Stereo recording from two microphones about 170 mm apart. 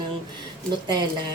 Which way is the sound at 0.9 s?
25° right (ahead or behind).